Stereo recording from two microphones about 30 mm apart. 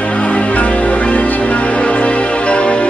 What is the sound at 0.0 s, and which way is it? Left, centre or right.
Music, left.